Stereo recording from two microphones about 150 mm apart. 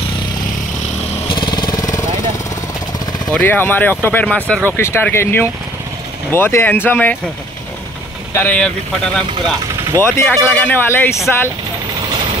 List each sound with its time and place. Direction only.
1.3 s vehicle: 30° left (ahead or behind)
3.3 s speech: 15° left (ahead or behind)
8.3 s speech: 15° left (ahead or behind)
10.0 s speech: 15° left (ahead or behind)